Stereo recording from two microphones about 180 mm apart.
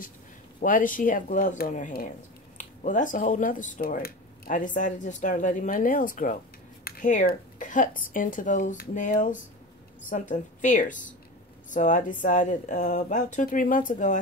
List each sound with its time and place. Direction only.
0.6 s speech: 50° left (ahead or behind)